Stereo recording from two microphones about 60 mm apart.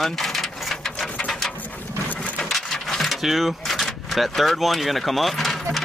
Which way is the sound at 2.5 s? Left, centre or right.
Centre.